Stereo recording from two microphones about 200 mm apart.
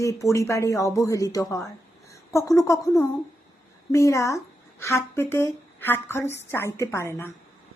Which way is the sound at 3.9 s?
15° left (ahead or behind).